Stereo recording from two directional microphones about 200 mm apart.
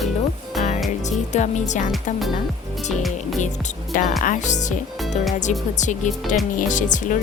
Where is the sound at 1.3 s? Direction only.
35° left (ahead or behind).